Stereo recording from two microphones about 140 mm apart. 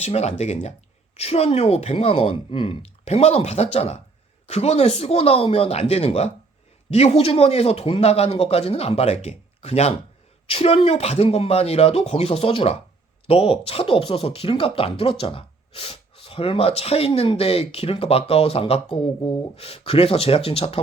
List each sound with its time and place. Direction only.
0.0 s speech: 50° left (ahead or behind)